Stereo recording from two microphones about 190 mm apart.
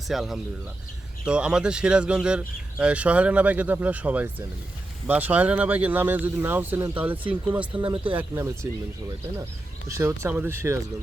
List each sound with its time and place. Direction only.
0.1 s speech: centre (ahead or behind)
7.8 s speech: 25° right (ahead or behind)
8.1 s speech: 10° right (ahead or behind)
9.9 s speech: 15° right (ahead or behind)